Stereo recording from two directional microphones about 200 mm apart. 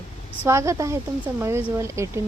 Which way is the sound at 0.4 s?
15° right (ahead or behind).